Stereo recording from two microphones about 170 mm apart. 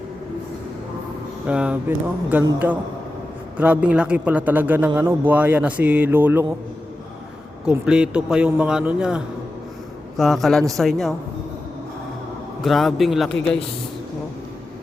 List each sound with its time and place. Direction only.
1.5 s speech: 5° right (ahead or behind)
3.6 s speech: 10° right (ahead or behind)
7.6 s a man's voice: 5° right (ahead or behind)
12.6 s a man's voice: centre (ahead or behind)